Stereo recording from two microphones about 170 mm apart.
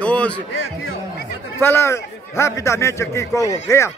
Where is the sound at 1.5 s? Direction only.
15° left (ahead or behind).